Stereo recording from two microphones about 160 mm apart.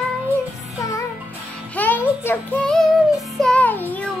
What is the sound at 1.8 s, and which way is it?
Child singing, 10° left (ahead or behind).